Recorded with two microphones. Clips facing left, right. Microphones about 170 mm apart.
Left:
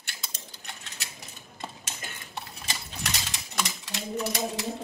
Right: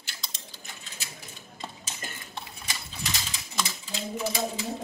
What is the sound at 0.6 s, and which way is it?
Mechanisms, 70° left (ahead or behind).